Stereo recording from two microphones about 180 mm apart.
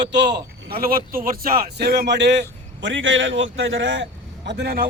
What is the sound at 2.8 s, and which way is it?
A man's voice, 90° right.